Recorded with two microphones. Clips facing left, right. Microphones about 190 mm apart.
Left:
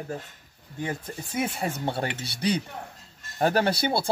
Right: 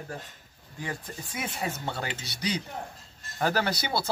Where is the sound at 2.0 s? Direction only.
60° left (ahead or behind).